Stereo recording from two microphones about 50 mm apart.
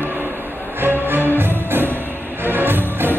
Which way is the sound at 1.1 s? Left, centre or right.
Right.